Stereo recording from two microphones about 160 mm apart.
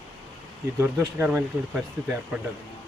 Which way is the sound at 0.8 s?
15° right (ahead or behind).